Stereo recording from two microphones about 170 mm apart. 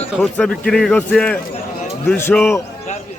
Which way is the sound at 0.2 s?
5° left (ahead or behind).